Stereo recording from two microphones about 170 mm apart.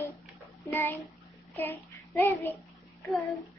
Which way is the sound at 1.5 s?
10° left (ahead or behind).